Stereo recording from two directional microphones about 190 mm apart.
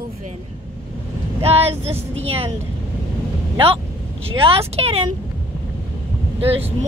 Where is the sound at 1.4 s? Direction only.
30° right (ahead or behind).